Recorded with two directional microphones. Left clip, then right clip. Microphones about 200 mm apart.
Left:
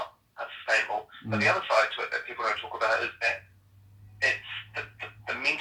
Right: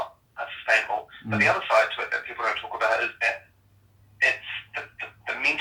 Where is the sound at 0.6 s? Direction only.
Centre (ahead or behind).